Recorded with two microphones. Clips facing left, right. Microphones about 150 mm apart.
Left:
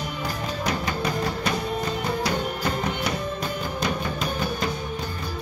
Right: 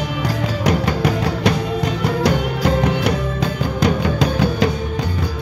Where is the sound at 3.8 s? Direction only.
85° right.